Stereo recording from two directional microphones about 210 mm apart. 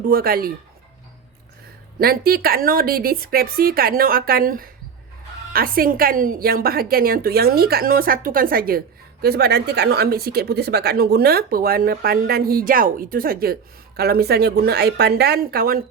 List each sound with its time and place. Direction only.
0.0 s speech: 45° right (ahead or behind)
2.0 s speech: 45° right (ahead or behind)